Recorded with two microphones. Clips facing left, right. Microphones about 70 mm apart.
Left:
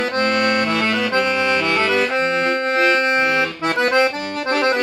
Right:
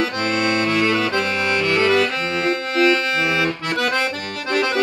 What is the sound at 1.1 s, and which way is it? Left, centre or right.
Accordion, left.